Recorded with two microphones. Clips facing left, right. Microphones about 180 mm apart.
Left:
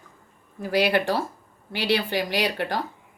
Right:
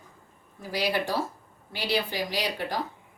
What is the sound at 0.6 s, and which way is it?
Speech, 65° left (ahead or behind).